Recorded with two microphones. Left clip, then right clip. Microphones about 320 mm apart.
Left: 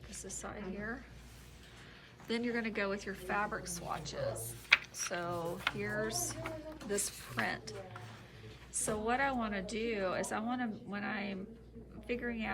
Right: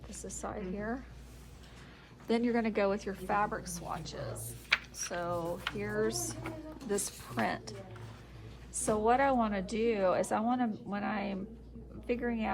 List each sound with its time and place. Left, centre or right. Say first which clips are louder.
0.1 s speech: right 4 dB; centre
2.2 s speech: right 5 dB; centre
4.7 s a sound: left 2 dB; centre
5.1 s speech: right 4 dB; centre
8.9 s speech: right 6 dB; centre